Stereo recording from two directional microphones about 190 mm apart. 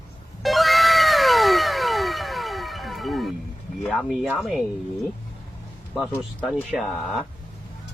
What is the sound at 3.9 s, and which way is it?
Speech, centre (ahead or behind).